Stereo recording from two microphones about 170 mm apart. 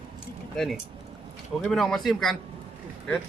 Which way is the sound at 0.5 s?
5° left (ahead or behind).